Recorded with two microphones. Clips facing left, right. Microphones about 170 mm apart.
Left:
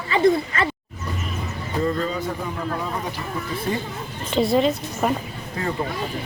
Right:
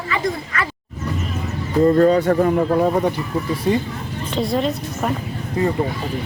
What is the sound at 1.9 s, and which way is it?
Speech, 65° right (ahead or behind).